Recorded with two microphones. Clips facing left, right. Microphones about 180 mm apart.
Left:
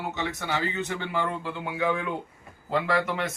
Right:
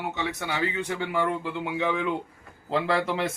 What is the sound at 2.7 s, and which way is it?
Speech, 30° right (ahead or behind).